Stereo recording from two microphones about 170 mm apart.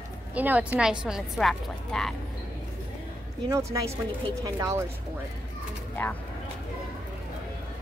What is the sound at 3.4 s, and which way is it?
A woman's voice, 20° right (ahead or behind).